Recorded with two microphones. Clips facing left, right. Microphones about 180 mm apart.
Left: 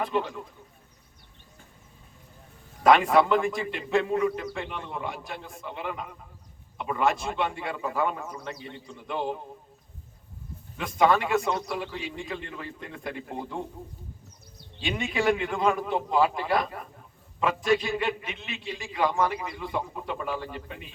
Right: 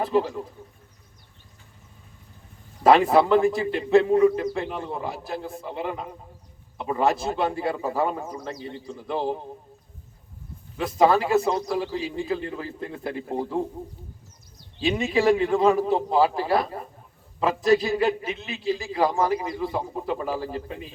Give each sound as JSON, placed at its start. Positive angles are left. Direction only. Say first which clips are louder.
{"t": 0.0, "sound": "a man's voice", "louder": "right 5 dB", "side_deg": -35}
{"t": 2.8, "sound": "a man's voice", "louder": "right 3 dB", "side_deg": -30}
{"t": 10.8, "sound": "a man's voice", "louder": "right 3 dB", "side_deg": -35}
{"t": 14.8, "sound": "a man's voice", "louder": "right 6 dB", "side_deg": -35}